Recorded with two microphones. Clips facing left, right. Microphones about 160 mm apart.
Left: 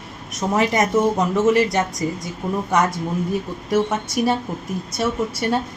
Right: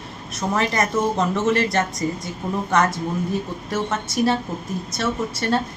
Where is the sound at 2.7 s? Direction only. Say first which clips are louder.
Even; 10° left (ahead or behind).